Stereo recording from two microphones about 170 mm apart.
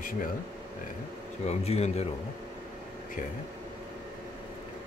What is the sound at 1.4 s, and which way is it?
Speech, 40° left (ahead or behind).